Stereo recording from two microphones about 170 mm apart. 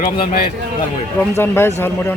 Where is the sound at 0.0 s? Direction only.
60° left (ahead or behind).